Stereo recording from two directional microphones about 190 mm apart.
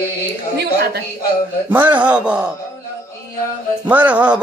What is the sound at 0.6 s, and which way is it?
Speech, 55° right (ahead or behind).